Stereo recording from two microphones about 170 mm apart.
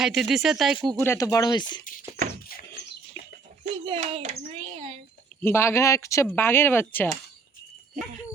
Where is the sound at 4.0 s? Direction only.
40° right (ahead or behind).